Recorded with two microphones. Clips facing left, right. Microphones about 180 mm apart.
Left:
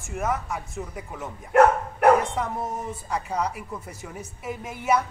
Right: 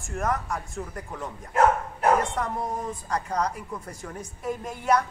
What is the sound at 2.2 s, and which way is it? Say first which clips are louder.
A woman's voice: even; centre (ahead or behind).